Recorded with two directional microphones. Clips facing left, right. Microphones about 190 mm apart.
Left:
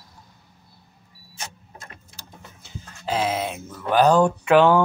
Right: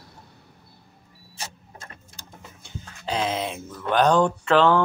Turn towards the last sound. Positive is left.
turn(degrees=10)  # may be behind; listen again after turning